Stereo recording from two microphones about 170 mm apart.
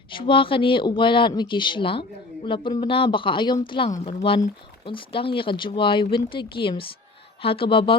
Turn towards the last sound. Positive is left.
turn(degrees=30)  # may be behind; listen again after turning